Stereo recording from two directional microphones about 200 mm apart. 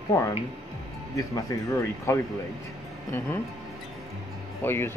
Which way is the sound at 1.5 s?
15° left (ahead or behind).